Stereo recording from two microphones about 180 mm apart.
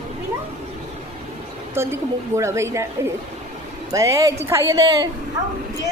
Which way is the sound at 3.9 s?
15° right (ahead or behind).